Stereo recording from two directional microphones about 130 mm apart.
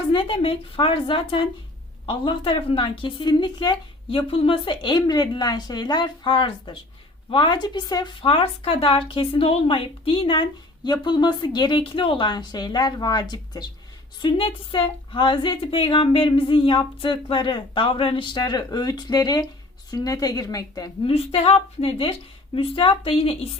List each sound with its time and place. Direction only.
0.1 s a woman's voice: 40° left (ahead or behind)
21.0 s a woman's voice: 50° left (ahead or behind)